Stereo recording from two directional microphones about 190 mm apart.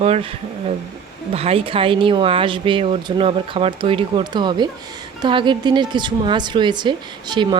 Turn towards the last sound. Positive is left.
turn(degrees=-25)  # may be behind; listen again after turning